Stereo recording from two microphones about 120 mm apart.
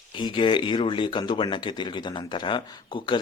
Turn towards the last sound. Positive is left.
turn(degrees=40)  # may be behind; listen again after turning